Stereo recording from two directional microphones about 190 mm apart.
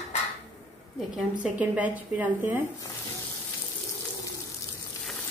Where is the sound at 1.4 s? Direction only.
5° right (ahead or behind).